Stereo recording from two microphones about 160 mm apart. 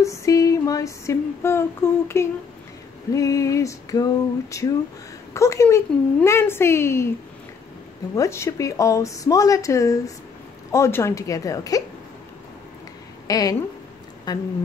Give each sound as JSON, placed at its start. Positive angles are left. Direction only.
{"t": 0.0, "sound": "female singing", "side_deg": 20}
{"t": 6.2, "sound": "a woman's voice", "side_deg": 15}
{"t": 8.2, "sound": "female singing", "side_deg": 15}
{"t": 13.3, "sound": "female singing", "side_deg": 25}